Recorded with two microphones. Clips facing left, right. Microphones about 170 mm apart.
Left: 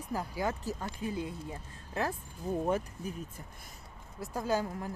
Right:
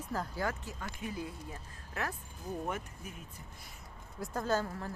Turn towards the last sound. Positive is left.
turn(degrees=15)  # may be behind; listen again after turning